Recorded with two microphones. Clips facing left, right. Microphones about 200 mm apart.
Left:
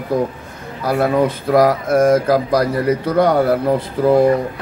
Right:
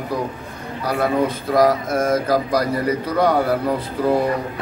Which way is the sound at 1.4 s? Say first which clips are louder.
Left 2 dB; 55° left (ahead or behind).